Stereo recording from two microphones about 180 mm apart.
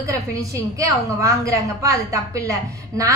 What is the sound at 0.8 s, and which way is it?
A woman's voice, 20° right (ahead or behind).